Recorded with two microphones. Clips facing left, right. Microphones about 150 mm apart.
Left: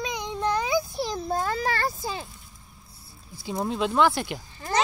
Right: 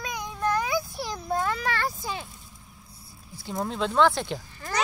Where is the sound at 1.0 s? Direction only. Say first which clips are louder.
Left 1 dB; 30° left (ahead or behind).